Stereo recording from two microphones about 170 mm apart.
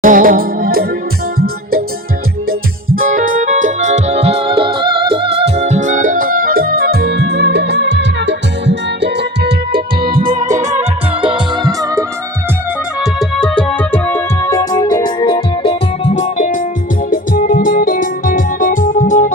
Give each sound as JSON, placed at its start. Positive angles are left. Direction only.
{"t": 0.0, "sound": "music", "side_deg": -55}
{"t": 2.5, "sound": "keyboard", "side_deg": -55}
{"t": 10.3, "sound": "music", "side_deg": -45}
{"t": 10.7, "sound": "music", "side_deg": -35}
{"t": 13.0, "sound": "music", "side_deg": 0}